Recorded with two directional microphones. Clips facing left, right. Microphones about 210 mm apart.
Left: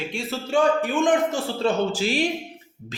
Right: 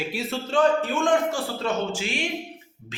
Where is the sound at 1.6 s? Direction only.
35° left (ahead or behind).